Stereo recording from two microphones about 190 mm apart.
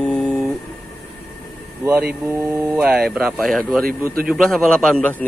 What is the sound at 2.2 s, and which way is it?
Speech, 15° right (ahead or behind).